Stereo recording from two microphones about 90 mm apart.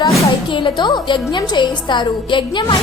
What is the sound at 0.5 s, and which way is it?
A woman's voice, 60° left (ahead or behind).